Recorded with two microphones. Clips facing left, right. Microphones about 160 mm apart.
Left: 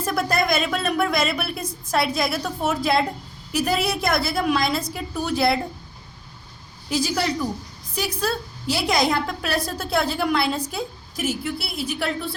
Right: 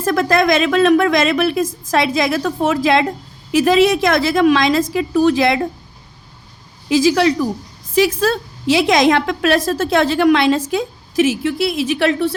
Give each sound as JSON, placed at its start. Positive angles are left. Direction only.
{"t": 0.0, "sound": "a woman's voice", "side_deg": -90}
{"t": 6.8, "sound": "a woman's voice", "side_deg": -90}